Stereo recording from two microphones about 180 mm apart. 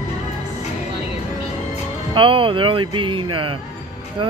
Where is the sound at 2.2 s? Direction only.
30° right (ahead or behind).